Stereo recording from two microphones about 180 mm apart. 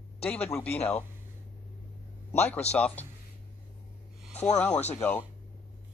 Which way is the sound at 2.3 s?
10° left (ahead or behind).